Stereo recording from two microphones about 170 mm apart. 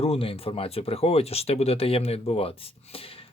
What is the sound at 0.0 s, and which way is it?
Speech, 35° left (ahead or behind).